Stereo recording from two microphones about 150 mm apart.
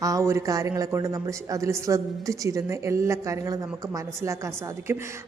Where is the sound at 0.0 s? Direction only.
20° right (ahead or behind).